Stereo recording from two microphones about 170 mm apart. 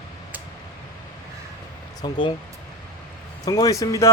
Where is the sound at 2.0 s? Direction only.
30° left (ahead or behind).